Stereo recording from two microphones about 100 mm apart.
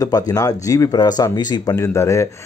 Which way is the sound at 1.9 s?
30° left (ahead or behind).